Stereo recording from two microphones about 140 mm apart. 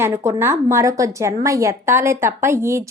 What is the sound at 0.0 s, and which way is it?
Speech, 20° right (ahead or behind).